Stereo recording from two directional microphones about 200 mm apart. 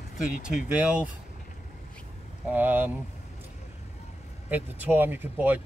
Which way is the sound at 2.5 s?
10° right (ahead or behind).